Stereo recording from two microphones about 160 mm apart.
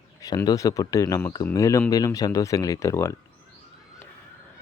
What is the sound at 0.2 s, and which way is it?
Speech, 20° left (ahead or behind).